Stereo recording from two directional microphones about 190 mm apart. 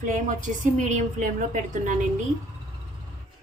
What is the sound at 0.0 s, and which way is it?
A woman's voice, 40° right (ahead or behind).